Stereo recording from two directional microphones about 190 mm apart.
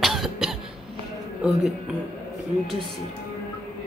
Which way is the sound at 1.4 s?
Centre (ahead or behind).